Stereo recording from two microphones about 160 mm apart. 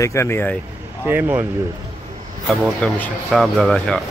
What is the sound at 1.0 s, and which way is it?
Speech, 10° right (ahead or behind).